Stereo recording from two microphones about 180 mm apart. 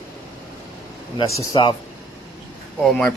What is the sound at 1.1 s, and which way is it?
Speech, 20° left (ahead or behind).